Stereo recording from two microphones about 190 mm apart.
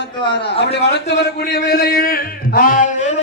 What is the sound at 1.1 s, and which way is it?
A man's voice, 60° left (ahead or behind).